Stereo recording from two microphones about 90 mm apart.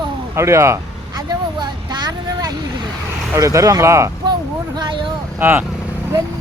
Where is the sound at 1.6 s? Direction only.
55° right (ahead or behind).